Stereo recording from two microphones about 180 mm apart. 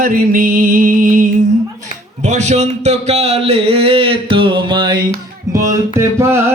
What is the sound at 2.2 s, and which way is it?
A man's voice, 40° right (ahead or behind).